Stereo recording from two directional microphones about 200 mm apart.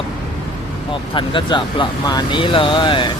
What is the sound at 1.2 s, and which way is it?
Speech, 25° left (ahead or behind).